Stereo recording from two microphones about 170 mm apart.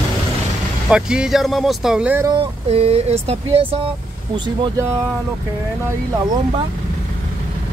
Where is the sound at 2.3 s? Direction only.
35° right (ahead or behind).